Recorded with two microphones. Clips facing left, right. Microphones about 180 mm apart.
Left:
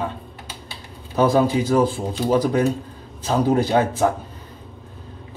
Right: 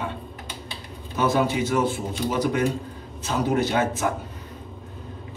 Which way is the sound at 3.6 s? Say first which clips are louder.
Left 5 dB; 35° left (ahead or behind).